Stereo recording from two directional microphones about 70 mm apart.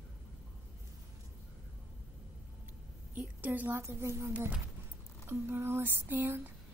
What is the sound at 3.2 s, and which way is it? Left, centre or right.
Speech, right.